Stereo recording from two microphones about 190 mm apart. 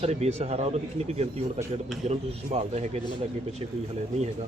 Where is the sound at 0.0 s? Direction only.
35° right (ahead or behind).